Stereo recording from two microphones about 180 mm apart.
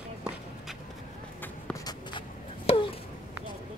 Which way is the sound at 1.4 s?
15° left (ahead or behind).